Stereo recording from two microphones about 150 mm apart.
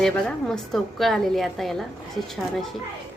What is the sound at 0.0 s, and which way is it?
A woman's voice, 5° left (ahead or behind).